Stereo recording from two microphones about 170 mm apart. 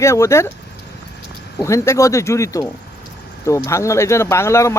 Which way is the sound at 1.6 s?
15° left (ahead or behind).